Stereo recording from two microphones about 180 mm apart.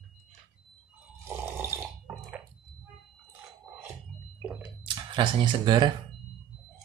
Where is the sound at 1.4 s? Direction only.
10° right (ahead or behind).